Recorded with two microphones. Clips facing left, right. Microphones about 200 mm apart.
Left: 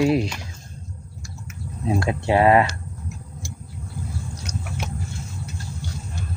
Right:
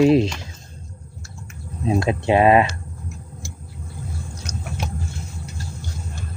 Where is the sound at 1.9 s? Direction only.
20° right (ahead or behind).